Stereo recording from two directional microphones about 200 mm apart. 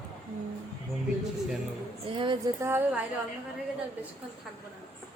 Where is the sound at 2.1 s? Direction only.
25° right (ahead or behind).